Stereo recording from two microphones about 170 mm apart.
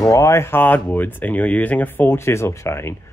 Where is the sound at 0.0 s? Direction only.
20° left (ahead or behind).